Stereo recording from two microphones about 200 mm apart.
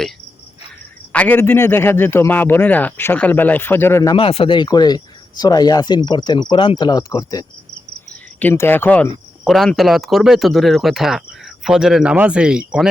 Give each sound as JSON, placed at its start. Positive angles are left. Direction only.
{"t": 1.1, "sound": "a man's voice", "side_deg": 10}